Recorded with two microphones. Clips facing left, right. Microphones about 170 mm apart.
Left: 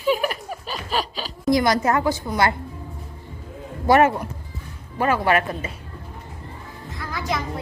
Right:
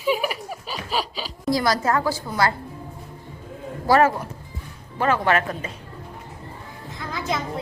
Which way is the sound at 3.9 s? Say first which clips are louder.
Left 1 dB; 20° left (ahead or behind).